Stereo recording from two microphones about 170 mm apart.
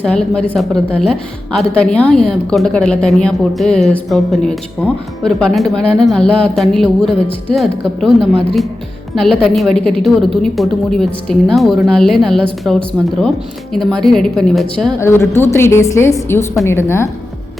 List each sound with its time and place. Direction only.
0.0 s a woman's voice: 5° left (ahead or behind)
13.7 s a woman's voice: centre (ahead or behind)
15.0 s a woman's voice: 15° left (ahead or behind)